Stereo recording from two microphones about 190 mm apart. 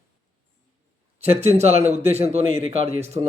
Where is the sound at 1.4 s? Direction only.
35° right (ahead or behind).